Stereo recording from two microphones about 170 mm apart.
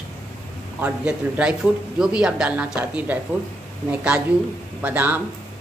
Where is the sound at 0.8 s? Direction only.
5° right (ahead or behind).